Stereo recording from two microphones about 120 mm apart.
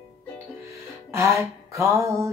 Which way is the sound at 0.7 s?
25° right (ahead or behind).